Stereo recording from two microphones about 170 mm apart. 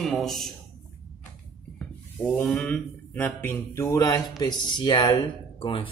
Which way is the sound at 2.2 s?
5° left (ahead or behind).